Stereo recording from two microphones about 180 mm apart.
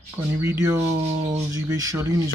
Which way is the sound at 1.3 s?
20° right (ahead or behind).